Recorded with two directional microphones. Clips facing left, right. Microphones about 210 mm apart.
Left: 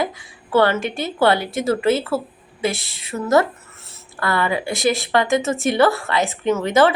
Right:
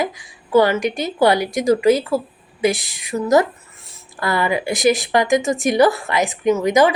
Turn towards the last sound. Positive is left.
turn(degrees=-15)  # may be behind; listen again after turning